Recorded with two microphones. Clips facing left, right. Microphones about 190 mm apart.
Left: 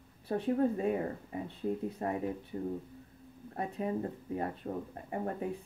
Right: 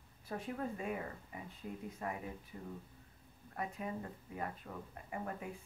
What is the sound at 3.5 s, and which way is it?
Speech, 35° left (ahead or behind).